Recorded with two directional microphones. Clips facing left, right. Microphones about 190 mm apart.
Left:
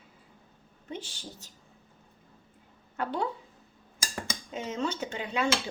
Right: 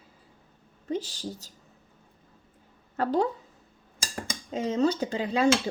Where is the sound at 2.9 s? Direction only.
40° right (ahead or behind).